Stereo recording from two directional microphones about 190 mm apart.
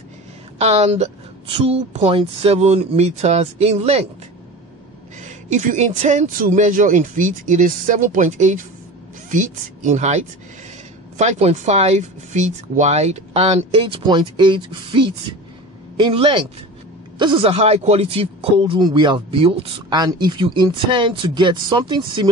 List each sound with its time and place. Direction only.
0.6 s speech: 35° right (ahead or behind)
5.2 s speech: 40° right (ahead or behind); by 22.3 s 25° right (ahead or behind)